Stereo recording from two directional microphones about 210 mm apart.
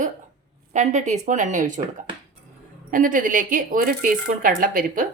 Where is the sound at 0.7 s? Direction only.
35° right (ahead or behind).